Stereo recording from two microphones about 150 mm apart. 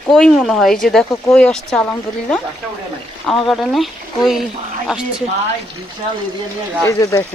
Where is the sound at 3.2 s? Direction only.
Centre (ahead or behind).